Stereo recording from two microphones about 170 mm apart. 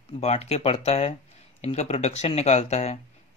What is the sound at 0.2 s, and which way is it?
Speech, 40° left (ahead or behind).